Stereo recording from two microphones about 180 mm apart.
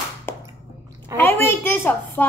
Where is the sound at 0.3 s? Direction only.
10° left (ahead or behind).